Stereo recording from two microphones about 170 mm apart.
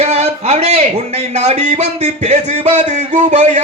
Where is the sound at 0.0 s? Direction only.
40° right (ahead or behind).